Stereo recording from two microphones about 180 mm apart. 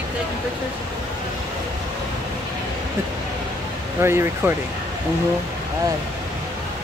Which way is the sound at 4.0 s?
15° right (ahead or behind).